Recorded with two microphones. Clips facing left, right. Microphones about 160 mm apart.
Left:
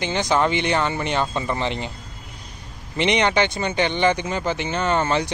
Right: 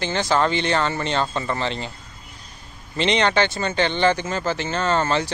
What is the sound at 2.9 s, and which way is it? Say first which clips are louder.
Speech: even; 15° left (ahead or behind).